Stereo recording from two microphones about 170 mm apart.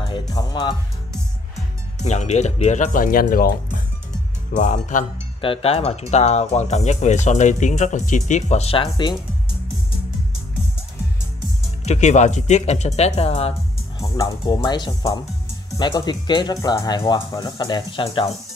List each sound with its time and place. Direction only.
0.1 s speech: 25° left (ahead or behind)
2.0 s speech: 40° left (ahead or behind)
4.5 s speech: 45° left (ahead or behind)
5.4 s speech: 35° left (ahead or behind)
11.8 s speech: 40° left (ahead or behind)